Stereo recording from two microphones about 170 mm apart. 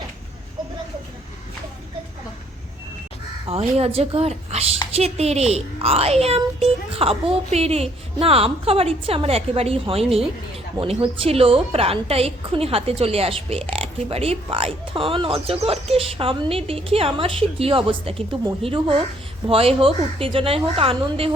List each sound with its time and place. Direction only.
3.4 s a woman's voice: 35° right (ahead or behind)